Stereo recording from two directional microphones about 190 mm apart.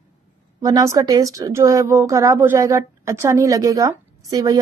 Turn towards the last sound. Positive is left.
turn(degrees=-20)  # may be behind; listen again after turning